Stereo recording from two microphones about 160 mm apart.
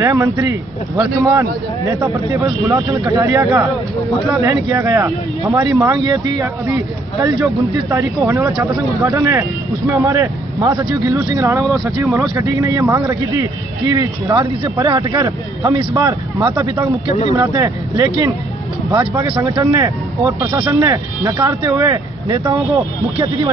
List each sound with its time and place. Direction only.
0.0 s speech: 20° right (ahead or behind)
2.7 s speech: 20° right (ahead or behind)
7.9 s a man's voice: 15° right (ahead or behind)
14.3 s speech: 30° right (ahead or behind)